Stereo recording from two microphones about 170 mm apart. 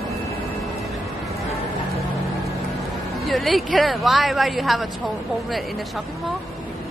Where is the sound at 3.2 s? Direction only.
Centre (ahead or behind).